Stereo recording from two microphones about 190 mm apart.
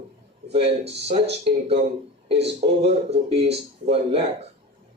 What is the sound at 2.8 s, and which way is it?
Speech, 35° right (ahead or behind).